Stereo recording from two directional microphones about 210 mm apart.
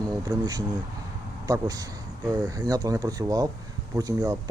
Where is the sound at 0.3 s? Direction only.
20° right (ahead or behind).